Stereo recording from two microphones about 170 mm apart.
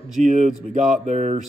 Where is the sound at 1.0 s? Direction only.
40° right (ahead or behind).